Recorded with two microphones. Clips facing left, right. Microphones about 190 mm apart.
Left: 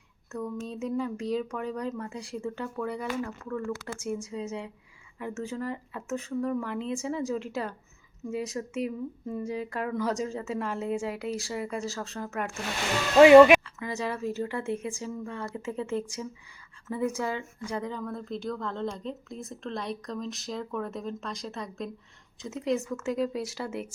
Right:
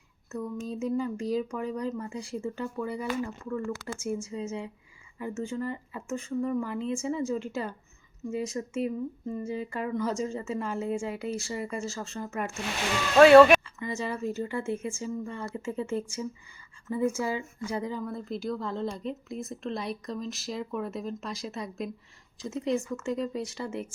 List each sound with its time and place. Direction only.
0.3 s a woman's voice: 5° right (ahead or behind)
13.1 s speech: 15° left (ahead or behind)
13.7 s a woman's voice: centre (ahead or behind)